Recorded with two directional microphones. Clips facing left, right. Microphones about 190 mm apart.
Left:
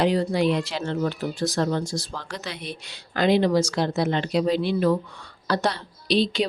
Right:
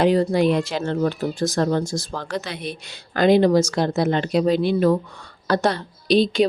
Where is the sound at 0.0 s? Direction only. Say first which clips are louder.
Right 4 dB; 50° right (ahead or behind).